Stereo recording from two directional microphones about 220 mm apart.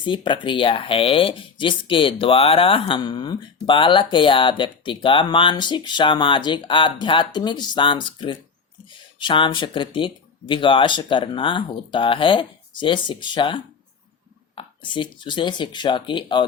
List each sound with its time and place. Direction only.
0.0 s speech: 20° left (ahead or behind)